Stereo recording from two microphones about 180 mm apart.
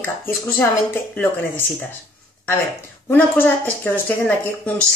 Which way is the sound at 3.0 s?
10° left (ahead or behind).